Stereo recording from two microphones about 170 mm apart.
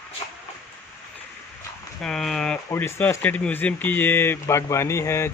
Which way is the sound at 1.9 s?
5° left (ahead or behind).